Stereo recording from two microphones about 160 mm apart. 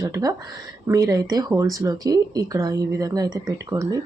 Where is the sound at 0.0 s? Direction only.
25° right (ahead or behind).